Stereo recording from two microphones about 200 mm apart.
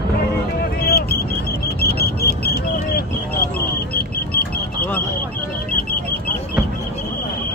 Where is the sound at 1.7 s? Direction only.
50° left (ahead or behind).